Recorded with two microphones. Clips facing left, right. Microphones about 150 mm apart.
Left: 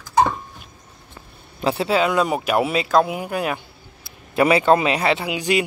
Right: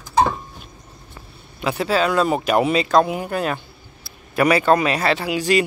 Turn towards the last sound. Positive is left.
turn(degrees=15)  # may be behind; listen again after turning